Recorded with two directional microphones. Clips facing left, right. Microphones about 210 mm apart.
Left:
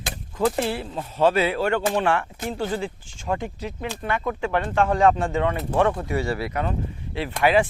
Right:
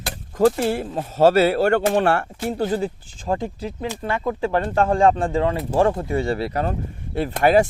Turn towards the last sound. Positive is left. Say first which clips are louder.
# right 3 dB
turn(degrees=-45)  # may be behind; listen again after turning